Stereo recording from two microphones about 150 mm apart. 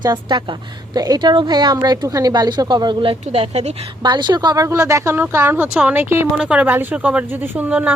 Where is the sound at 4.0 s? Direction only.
30° right (ahead or behind).